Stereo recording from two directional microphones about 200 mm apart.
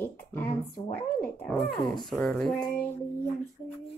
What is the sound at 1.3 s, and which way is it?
Speech, centre (ahead or behind).